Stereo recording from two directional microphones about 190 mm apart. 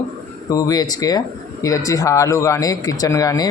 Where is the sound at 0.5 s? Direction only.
20° left (ahead or behind).